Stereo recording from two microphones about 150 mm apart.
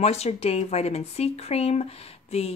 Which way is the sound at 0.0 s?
45° left (ahead or behind).